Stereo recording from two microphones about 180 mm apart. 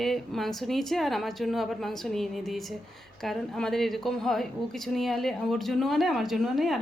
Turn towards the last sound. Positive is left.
turn(degrees=0)  # may be behind; listen again after turning